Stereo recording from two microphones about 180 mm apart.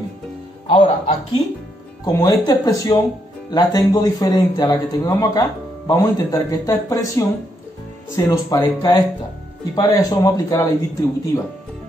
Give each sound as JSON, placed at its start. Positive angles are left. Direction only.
{"t": 0.7, "sound": "speech", "side_deg": 30}
{"t": 8.3, "sound": "speech", "side_deg": 20}